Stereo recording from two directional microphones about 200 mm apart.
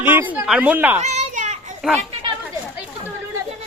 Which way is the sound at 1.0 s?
35° right (ahead or behind).